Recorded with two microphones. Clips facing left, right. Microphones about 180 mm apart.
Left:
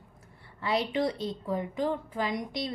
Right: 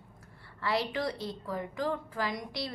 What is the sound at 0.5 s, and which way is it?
A woman's voice, 20° left (ahead or behind).